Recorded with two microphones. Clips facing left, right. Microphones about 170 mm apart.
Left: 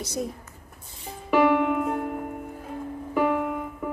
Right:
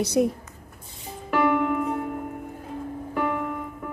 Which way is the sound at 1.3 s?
5° left (ahead or behind).